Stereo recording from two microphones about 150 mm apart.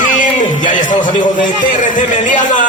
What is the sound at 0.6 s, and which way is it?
Speech, 60° left (ahead or behind).